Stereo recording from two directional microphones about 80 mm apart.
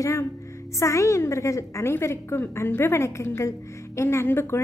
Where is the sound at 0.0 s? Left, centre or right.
Left.